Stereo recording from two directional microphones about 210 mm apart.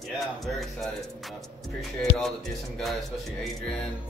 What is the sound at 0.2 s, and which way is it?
Speech, centre (ahead or behind).